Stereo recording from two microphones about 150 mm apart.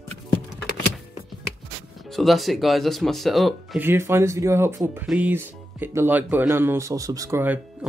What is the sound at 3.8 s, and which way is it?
Speech, 15° right (ahead or behind).